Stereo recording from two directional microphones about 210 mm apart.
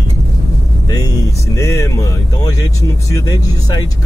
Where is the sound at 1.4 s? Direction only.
15° left (ahead or behind).